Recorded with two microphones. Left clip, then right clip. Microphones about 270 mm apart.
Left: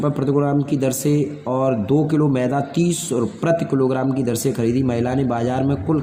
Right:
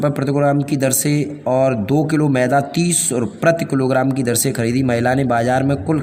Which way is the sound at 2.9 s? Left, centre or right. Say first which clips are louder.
Right 2 dB; right.